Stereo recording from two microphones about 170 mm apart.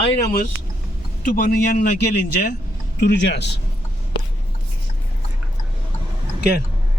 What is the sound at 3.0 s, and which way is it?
Speech, 75° left (ahead or behind).